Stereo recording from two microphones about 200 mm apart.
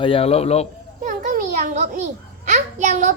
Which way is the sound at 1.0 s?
40° right (ahead or behind).